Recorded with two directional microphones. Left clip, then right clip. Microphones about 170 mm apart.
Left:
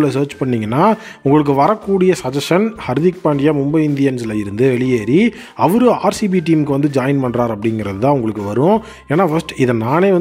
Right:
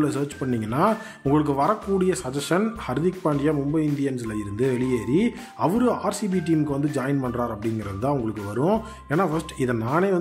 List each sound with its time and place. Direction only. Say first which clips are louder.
0.0 s speech: left 9 dB; 35° left (ahead or behind)